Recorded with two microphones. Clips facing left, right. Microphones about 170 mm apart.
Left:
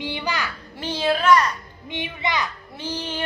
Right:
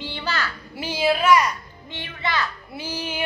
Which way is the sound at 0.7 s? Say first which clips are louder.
Right 1 dB; 10° right (ahead or behind).